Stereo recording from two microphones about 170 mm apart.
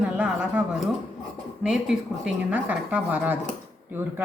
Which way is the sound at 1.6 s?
5° right (ahead or behind).